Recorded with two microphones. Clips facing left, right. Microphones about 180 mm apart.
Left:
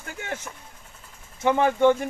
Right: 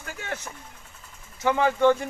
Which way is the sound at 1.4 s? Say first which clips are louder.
Left 1 dB; 15° left (ahead or behind).